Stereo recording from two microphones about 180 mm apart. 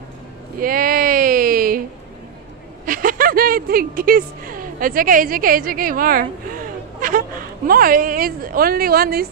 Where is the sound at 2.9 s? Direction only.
50° right (ahead or behind).